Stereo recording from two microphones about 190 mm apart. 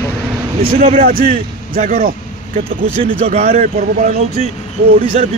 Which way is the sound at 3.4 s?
45° right (ahead or behind).